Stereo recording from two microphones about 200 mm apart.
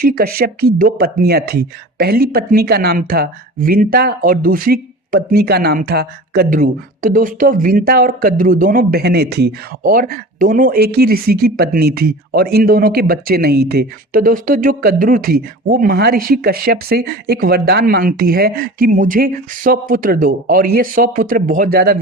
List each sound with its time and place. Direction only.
0.0 s speech: 50° right (ahead or behind)